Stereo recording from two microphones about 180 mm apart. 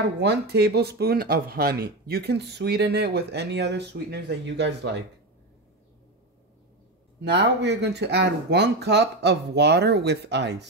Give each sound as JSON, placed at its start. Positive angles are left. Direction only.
{"t": 0.2, "sound": "speech", "side_deg": -65}
{"t": 7.2, "sound": "speech", "side_deg": -70}